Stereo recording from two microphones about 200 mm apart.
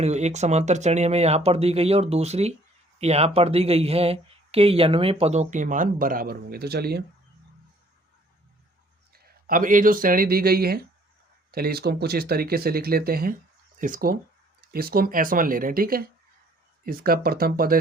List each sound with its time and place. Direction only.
0.0 s speech: 35° right (ahead or behind); by 7.0 s 55° right (ahead or behind)
9.1 s speech: 45° right (ahead or behind)